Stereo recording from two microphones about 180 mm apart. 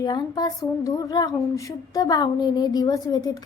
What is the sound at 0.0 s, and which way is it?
Speech, 25° left (ahead or behind).